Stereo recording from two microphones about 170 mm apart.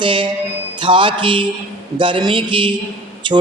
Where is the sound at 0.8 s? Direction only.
30° right (ahead or behind).